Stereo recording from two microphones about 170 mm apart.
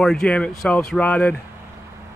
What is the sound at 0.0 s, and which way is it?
Speech, 5° left (ahead or behind).